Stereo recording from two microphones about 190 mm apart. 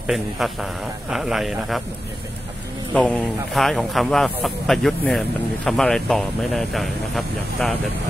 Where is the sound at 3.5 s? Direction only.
Centre (ahead or behind).